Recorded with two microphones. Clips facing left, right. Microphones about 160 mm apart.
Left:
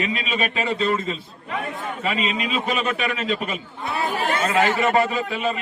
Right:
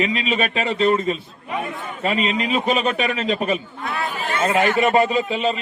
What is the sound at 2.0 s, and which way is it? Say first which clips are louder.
A man's voice: right 4 dB; 25° right (ahead or behind).